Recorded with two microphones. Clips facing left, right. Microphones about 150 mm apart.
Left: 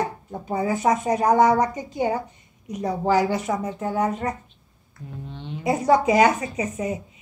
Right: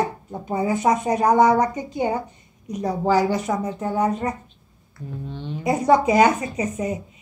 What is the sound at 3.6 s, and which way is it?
Speech, 25° right (ahead or behind).